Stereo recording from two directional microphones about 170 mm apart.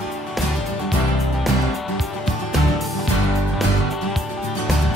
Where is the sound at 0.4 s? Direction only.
Centre (ahead or behind).